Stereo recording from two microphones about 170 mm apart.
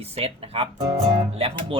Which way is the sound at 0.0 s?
35° right (ahead or behind).